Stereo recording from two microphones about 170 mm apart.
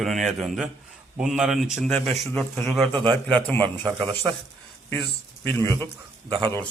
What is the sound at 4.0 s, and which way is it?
Speech, 30° right (ahead or behind).